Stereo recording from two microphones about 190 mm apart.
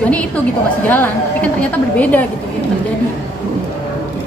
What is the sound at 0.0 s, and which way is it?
A woman's voice, 5° left (ahead or behind).